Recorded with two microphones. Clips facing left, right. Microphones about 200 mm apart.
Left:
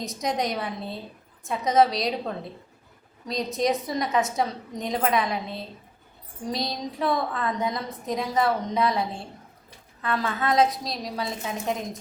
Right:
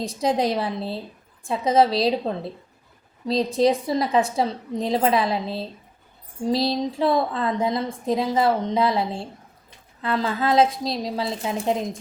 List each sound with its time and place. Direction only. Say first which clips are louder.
0.0 s a woman's voice: right 5 dB; 30° right (ahead or behind)